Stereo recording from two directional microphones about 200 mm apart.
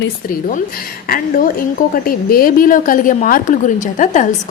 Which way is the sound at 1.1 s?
45° left (ahead or behind).